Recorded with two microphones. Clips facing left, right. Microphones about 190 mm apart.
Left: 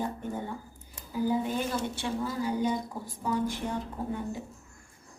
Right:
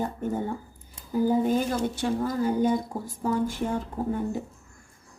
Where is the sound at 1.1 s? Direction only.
45° right (ahead or behind).